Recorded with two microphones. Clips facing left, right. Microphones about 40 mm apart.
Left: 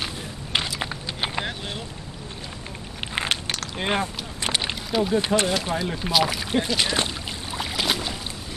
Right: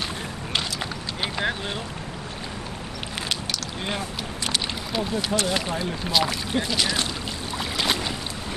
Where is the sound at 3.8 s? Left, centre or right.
Left.